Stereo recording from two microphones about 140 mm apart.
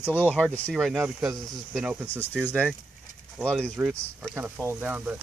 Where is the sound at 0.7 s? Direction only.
5° right (ahead or behind).